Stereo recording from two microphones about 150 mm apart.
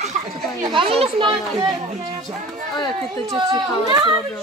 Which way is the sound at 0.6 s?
35° right (ahead or behind).